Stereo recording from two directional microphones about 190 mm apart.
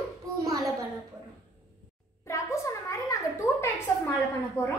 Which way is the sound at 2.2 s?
15° left (ahead or behind).